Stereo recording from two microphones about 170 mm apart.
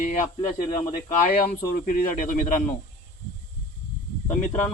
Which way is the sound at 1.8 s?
50° left (ahead or behind).